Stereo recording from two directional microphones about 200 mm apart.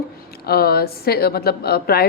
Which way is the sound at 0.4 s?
50° left (ahead or behind).